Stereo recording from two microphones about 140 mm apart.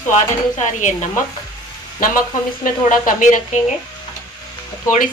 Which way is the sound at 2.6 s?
70° left (ahead or behind).